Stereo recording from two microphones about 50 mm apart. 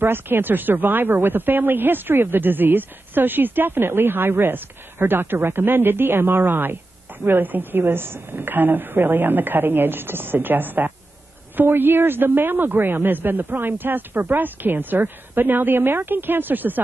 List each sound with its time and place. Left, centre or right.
0.0 s speech: right